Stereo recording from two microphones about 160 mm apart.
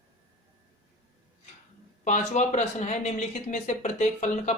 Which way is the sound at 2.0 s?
50° left (ahead or behind).